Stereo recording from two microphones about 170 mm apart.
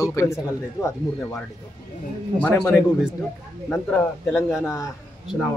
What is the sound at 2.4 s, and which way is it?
A man's voice, centre (ahead or behind).